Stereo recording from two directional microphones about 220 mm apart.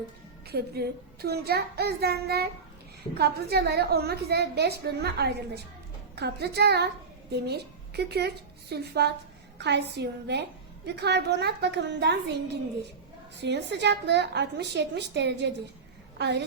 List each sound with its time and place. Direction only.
0.4 s a woman's voice: 45° right (ahead or behind)